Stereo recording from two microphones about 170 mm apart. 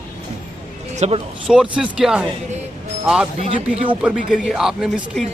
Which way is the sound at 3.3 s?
35° right (ahead or behind).